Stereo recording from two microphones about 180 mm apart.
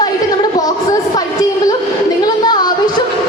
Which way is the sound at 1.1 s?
20° left (ahead or behind).